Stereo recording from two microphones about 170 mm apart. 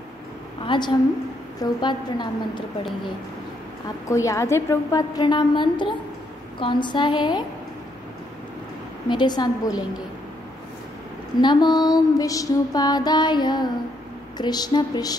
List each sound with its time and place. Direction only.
0.7 s music: 25° left (ahead or behind)
4.1 s music: 15° left (ahead or behind)
9.1 s music: 25° left (ahead or behind)
11.4 s music: 25° left (ahead or behind)